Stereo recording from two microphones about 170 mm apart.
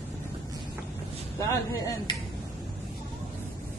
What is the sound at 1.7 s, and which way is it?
Speech, 20° left (ahead or behind).